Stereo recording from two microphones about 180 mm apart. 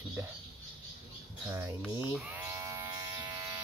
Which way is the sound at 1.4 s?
10° right (ahead or behind).